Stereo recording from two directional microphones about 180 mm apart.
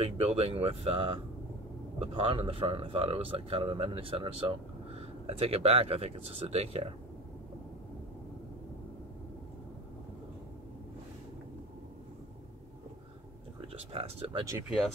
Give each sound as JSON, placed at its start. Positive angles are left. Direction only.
{"t": 0.0, "sound": "a man's voice", "side_deg": -35}
{"t": 13.6, "sound": "speech", "side_deg": -35}